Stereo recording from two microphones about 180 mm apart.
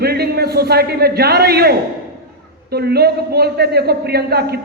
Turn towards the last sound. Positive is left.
turn(degrees=-60)  # may be behind; listen again after turning